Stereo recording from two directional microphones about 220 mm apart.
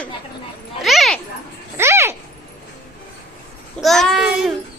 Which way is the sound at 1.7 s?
10° right (ahead or behind).